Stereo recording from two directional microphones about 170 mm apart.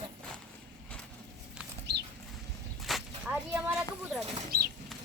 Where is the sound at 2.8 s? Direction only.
Centre (ahead or behind).